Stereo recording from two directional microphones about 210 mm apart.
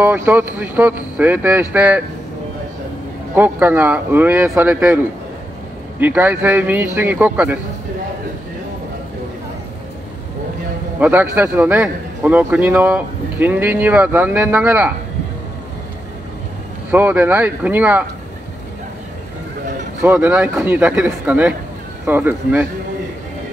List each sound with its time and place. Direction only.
0.0 s a man's voice: 10° right (ahead or behind)
3.3 s a man's voice: 10° right (ahead or behind)
11.0 s a man's voice: 10° right (ahead or behind)
16.9 s a man's voice: 10° right (ahead or behind)
20.0 s a man's voice: 10° right (ahead or behind)